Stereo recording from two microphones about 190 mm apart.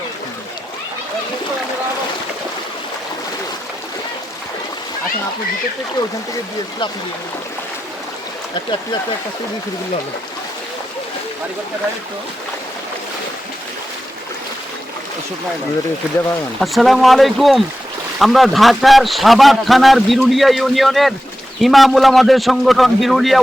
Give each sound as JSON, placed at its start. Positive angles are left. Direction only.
{"t": 16.6, "sound": "a man's voice", "side_deg": 0}